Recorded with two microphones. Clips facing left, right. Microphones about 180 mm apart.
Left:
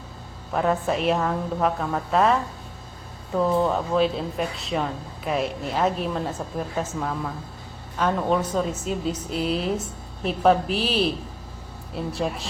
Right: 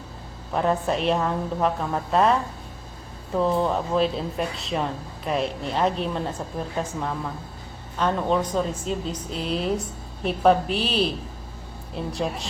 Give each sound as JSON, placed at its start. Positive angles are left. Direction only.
{"t": 0.5, "sound": "a woman's voice", "side_deg": 0}